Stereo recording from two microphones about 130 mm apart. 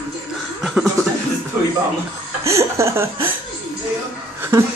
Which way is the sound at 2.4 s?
25° right (ahead or behind).